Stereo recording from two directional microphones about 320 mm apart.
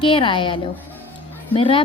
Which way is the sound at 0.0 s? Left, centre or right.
Centre.